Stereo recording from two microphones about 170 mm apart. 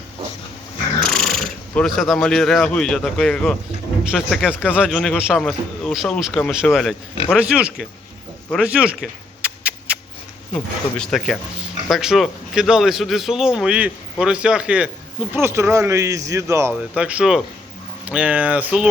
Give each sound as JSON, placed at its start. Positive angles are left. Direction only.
{"t": 1.0, "sound": "a man's voice", "side_deg": 0}
{"t": 8.6, "sound": "a sound", "side_deg": -5}
{"t": 10.5, "sound": "a man's voice", "side_deg": 5}